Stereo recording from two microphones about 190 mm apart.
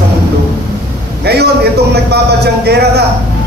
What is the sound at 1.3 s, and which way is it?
A woman's voice, 60° right (ahead or behind).